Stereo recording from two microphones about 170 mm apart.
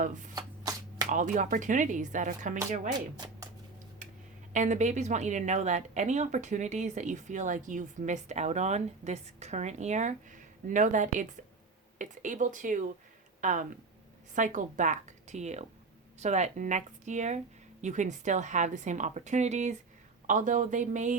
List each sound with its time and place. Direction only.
0.0 s a woman's voice: 50° right (ahead or behind)
0.3 s shuffling cards: 20° right (ahead or behind)
1.1 s a woman's voice: 50° right (ahead or behind)
4.5 s a woman's voice: 45° right (ahead or behind)